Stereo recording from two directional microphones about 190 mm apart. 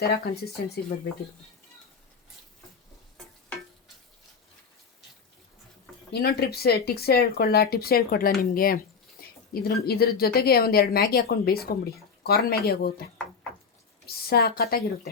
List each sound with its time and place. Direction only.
0.0 s speech: 55° left (ahead or behind)
6.1 s a woman's voice: 55° left (ahead or behind)
14.1 s a woman's voice: 55° left (ahead or behind)